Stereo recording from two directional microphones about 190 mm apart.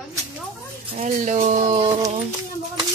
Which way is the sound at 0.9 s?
40° right (ahead or behind).